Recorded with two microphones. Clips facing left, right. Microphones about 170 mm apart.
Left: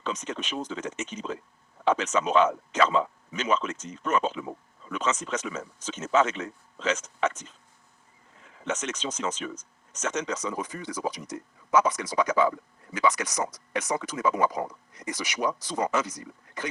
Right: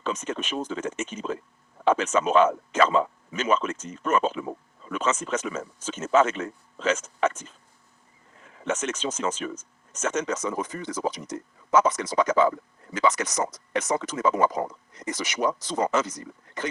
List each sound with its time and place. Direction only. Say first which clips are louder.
0.0 s speech: right 3 dB; 50° right (ahead or behind)
8.6 s speech: right 3 dB; 50° right (ahead or behind)